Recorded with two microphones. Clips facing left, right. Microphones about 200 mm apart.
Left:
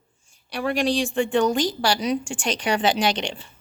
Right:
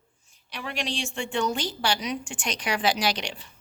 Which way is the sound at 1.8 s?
35° left (ahead or behind).